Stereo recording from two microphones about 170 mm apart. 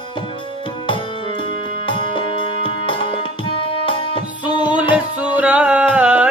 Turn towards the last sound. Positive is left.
turn(degrees=-5)  # may be behind; listen again after turning